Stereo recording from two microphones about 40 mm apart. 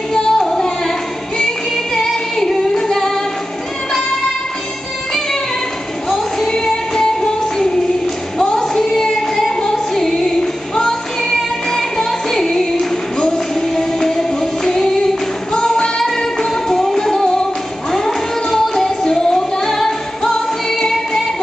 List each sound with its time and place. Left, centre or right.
0.1 s music: centre
2.0 s female singing: centre
6.0 s music: centre
8.5 s singing: centre
13.2 s music: centre